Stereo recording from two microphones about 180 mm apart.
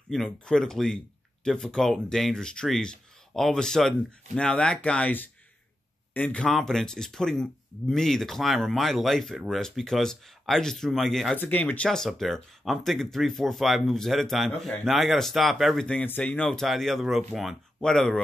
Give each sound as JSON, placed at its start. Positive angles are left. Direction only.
{"t": 0.1, "sound": "speech", "side_deg": 5}